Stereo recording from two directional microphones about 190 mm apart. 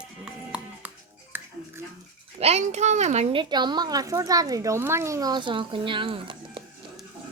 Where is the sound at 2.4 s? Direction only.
35° right (ahead or behind).